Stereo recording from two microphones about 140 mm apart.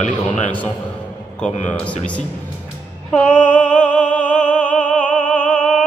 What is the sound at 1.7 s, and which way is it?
Speech, 10° left (ahead or behind).